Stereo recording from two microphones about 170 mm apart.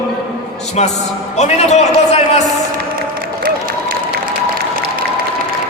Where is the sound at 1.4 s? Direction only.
40° left (ahead or behind).